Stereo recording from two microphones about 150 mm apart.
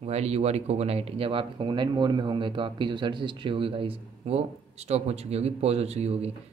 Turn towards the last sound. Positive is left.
turn(degrees=-45)  # may be behind; listen again after turning